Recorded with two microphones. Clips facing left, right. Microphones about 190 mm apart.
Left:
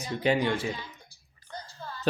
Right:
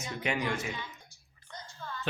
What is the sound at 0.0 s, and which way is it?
Speech, 30° left (ahead or behind).